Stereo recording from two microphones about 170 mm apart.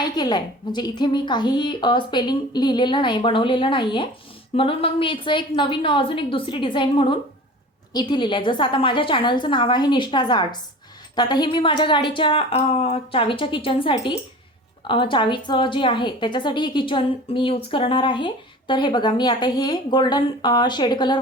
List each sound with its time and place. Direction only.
0.0 s a woman's voice: 25° left (ahead or behind)